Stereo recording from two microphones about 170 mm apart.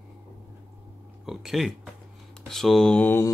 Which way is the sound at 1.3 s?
Centre (ahead or behind).